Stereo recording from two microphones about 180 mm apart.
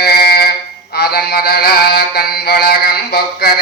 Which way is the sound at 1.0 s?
60° left (ahead or behind).